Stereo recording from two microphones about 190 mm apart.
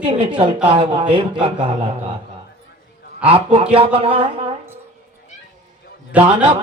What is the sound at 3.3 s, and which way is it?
Speech, 30° right (ahead or behind).